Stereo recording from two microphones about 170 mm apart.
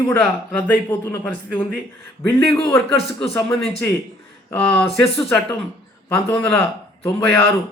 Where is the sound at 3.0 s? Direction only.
35° left (ahead or behind).